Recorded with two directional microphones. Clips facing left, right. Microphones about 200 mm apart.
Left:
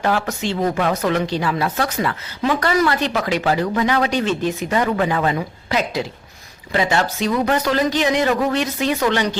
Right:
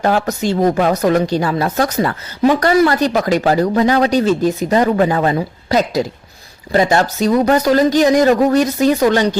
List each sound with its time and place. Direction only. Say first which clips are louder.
0.0 s speech: right 5 dB; 40° right (ahead or behind)